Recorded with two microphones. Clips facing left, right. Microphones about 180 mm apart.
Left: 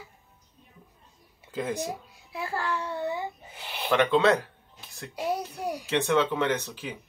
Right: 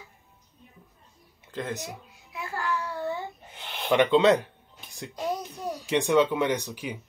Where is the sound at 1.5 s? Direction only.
10° left (ahead or behind).